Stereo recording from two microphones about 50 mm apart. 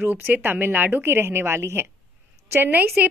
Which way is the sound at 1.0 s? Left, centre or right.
Right.